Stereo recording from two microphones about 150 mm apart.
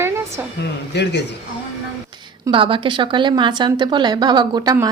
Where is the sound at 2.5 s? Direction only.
35° right (ahead or behind).